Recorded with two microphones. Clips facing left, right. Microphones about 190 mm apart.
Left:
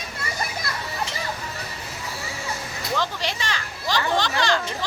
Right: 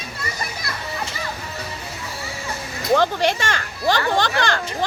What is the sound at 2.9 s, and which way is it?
Speech, 55° right (ahead or behind).